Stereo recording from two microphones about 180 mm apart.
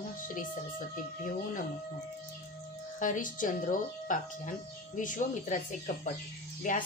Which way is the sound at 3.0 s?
45° left (ahead or behind).